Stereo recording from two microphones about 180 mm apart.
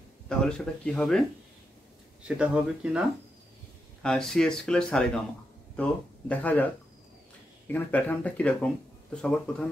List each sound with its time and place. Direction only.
0.3 s speech: 5° left (ahead or behind)
2.2 s speech: 5° right (ahead or behind)
4.0 s speech: centre (ahead or behind)